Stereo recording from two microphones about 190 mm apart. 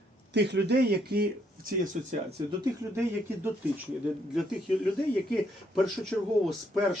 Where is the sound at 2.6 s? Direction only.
15° right (ahead or behind).